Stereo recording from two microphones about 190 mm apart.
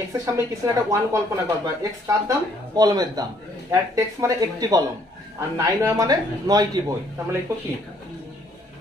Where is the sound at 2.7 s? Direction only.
20° right (ahead or behind).